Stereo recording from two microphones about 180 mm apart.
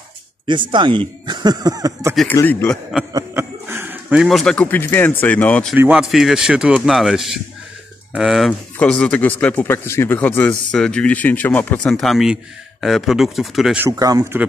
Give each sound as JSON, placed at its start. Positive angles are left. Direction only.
{"t": 0.5, "sound": "speech", "side_deg": -25}
{"t": 2.3, "sound": "speech", "side_deg": 10}
{"t": 3.1, "sound": "speech", "side_deg": -15}
{"t": 5.8, "sound": "speech", "side_deg": -5}
{"t": 13.8, "sound": "speech", "side_deg": -20}